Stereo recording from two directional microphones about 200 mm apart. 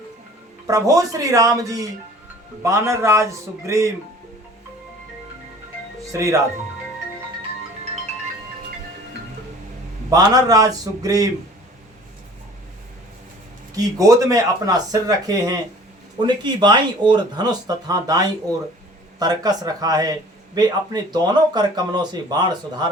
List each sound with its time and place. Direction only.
0.7 s speech: 15° right (ahead or behind)
6.1 s speech: 15° right (ahead or behind)
10.1 s speech: 20° right (ahead or behind)
13.7 s speech: 15° right (ahead or behind)